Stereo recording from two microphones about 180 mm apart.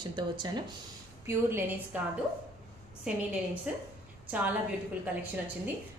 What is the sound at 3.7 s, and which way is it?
Speech, 5° right (ahead or behind).